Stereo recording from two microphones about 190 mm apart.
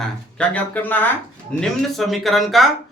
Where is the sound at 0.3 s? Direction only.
10° left (ahead or behind).